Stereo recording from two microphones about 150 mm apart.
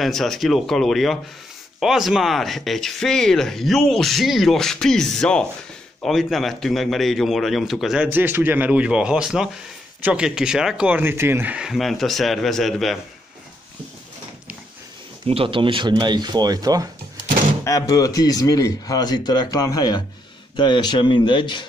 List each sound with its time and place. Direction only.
0.0 s speech: centre (ahead or behind)
15.2 s speech: 35° right (ahead or behind)
17.6 s a man's voice: 25° left (ahead or behind)